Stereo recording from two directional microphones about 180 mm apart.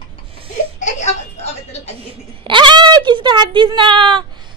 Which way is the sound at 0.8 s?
40° left (ahead or behind).